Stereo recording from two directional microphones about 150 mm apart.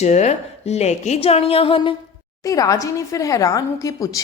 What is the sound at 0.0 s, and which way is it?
A woman's voice, 50° left (ahead or behind).